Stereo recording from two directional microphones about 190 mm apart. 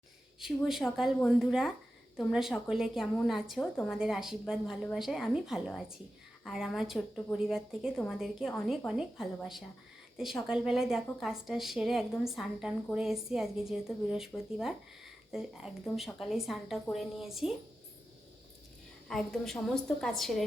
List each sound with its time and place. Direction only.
0.3 s a woman's voice: centre (ahead or behind)
19.0 s a woman's voice: centre (ahead or behind)